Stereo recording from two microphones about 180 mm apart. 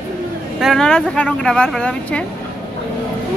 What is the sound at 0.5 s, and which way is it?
Speech, centre (ahead or behind).